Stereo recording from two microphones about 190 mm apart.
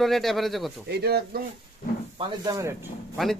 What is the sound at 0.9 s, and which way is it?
Speech, 60° right (ahead or behind).